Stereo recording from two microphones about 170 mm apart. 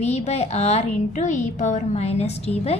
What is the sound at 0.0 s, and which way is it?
A woman's voice, 40° left (ahead or behind).